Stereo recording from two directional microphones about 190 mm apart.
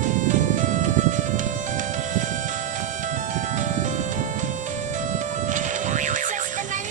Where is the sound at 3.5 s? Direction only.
40° right (ahead or behind).